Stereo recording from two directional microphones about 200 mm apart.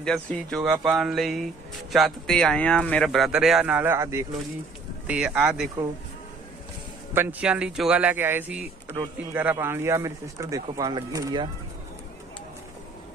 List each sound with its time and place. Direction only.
0.0 s speech: 5° left (ahead or behind)
7.2 s speech: 10° right (ahead or behind)